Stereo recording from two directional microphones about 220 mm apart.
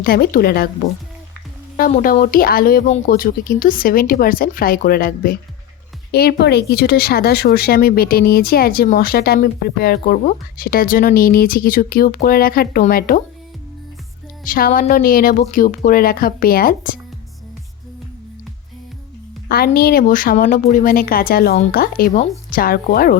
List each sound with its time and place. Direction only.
0.0 s speech: 45° left (ahead or behind)
1.7 s speech: 40° left (ahead or behind)
14.4 s speech: 40° left (ahead or behind)
19.5 s speech: 45° left (ahead or behind)